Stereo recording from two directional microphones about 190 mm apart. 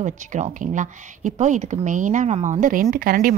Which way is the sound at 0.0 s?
40° right (ahead or behind).